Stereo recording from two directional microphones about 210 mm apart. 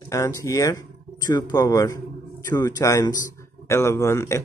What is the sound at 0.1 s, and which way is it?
Speech, 15° left (ahead or behind).